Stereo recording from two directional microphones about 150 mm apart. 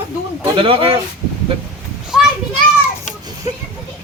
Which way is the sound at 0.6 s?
35° right (ahead or behind).